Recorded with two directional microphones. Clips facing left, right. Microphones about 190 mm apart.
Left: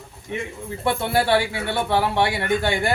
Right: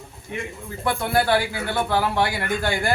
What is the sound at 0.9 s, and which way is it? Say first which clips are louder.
Speech: left 1 dB; 25° left (ahead or behind).